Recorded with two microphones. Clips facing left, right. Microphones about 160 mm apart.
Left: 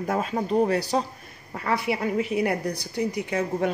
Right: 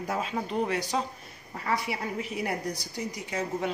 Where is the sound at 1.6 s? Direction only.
65° left (ahead or behind).